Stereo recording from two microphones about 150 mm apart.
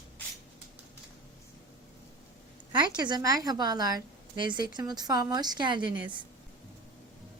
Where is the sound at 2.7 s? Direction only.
30° right (ahead or behind).